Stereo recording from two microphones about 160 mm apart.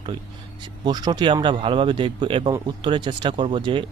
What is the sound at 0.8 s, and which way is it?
Speech, 25° right (ahead or behind).